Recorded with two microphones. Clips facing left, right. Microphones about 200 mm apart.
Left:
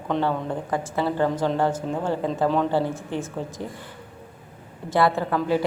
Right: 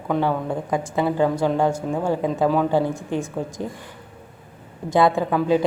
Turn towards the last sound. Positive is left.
turn(degrees=-15)  # may be behind; listen again after turning